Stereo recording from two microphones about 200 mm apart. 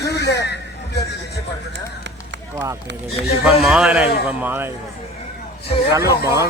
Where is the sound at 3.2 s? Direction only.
55° right (ahead or behind).